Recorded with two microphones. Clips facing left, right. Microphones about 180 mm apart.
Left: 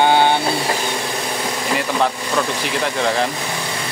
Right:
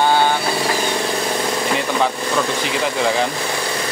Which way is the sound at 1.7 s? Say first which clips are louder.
Even; centre (ahead or behind).